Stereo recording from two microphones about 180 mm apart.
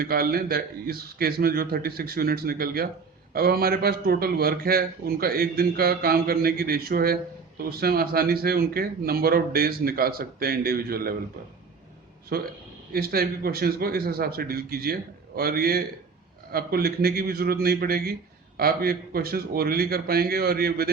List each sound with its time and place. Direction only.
0.0 s a man's voice: 55° right (ahead or behind)
12.3 s a man's voice: 60° right (ahead or behind)